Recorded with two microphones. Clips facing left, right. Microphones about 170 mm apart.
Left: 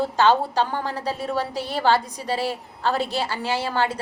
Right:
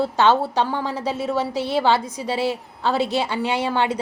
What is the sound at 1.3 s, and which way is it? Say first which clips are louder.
Speech: right 4 dB; 15° left (ahead or behind).